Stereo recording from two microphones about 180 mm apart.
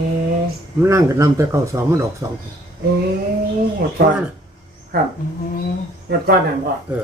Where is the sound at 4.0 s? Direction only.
55° right (ahead or behind).